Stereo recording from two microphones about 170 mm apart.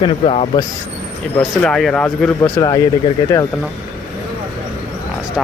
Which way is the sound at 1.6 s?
5° left (ahead or behind).